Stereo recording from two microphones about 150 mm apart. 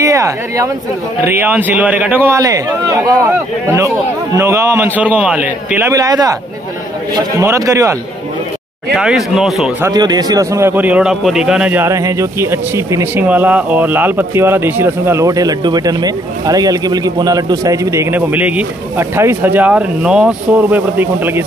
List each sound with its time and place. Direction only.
0.0 s a man's voice: 20° right (ahead or behind)
8.9 s speech: 5° right (ahead or behind)
9.8 s a man's voice: 25° right (ahead or behind)